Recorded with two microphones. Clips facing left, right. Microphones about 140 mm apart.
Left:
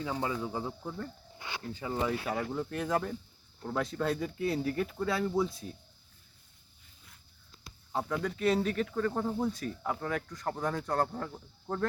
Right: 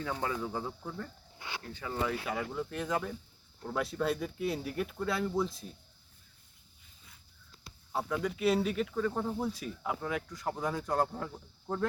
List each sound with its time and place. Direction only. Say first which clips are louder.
0.0 s speech: left 1 dB; 20° left (ahead or behind)
2.0 s speech: left 2 dB; 5° left (ahead or behind)
7.9 s speech: even; centre (ahead or behind)